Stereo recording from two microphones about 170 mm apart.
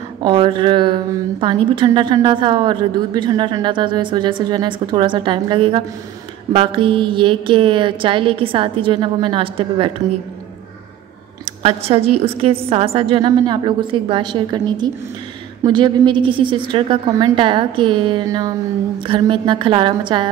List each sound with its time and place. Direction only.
0.2 s a woman's voice: 30° right (ahead or behind)
11.6 s a woman's voice: 35° right (ahead or behind)